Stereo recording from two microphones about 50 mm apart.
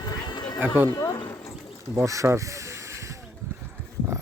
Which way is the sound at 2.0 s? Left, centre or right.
Right.